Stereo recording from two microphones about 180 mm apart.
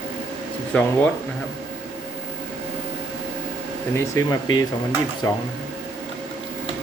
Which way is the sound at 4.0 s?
20° left (ahead or behind).